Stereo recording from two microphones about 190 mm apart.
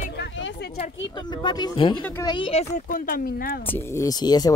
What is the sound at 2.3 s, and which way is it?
Speech, 30° left (ahead or behind).